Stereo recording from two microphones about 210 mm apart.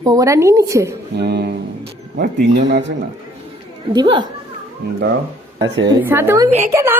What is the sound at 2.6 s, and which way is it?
Speech, 55° right (ahead or behind).